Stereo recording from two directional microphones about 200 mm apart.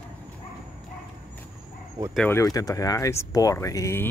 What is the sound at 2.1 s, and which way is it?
Speech, 5° left (ahead or behind).